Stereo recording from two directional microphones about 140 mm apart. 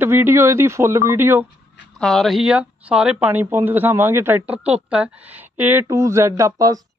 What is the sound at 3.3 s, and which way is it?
Speech, 15° right (ahead or behind).